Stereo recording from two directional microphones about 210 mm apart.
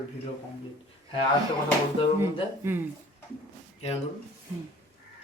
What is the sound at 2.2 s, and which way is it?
Speech, 10° right (ahead or behind).